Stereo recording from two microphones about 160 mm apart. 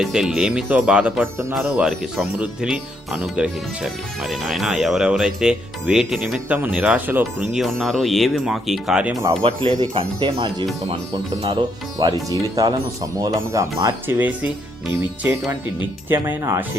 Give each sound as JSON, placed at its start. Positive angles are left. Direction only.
{"t": 0.0, "sound": "speech", "side_deg": -5}
{"t": 1.5, "sound": "speech", "side_deg": -5}
{"t": 7.5, "sound": "speech", "side_deg": 0}
{"t": 9.4, "sound": "speech", "side_deg": -35}
{"t": 12.3, "sound": "speech", "side_deg": -25}